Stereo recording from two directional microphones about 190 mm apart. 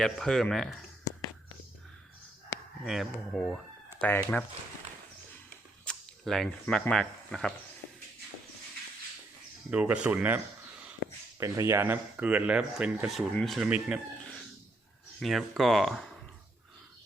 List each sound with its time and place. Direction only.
0.0 s speech: centre (ahead or behind)
2.8 s speech: centre (ahead or behind)
5.8 s speech: 5° left (ahead or behind)
9.6 s speech: 5° right (ahead or behind)
11.0 s a sound: 70° right (ahead or behind)
11.3 s speech: 15° right (ahead or behind)
15.2 s speech: centre (ahead or behind)